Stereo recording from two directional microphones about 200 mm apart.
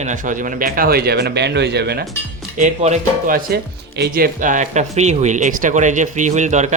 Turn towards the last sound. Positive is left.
turn(degrees=-35)  # may be behind; listen again after turning